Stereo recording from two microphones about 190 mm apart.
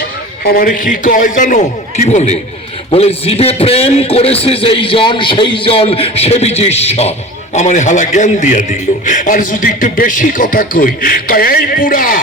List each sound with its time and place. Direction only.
0.4 s a man's voice: 50° left (ahead or behind)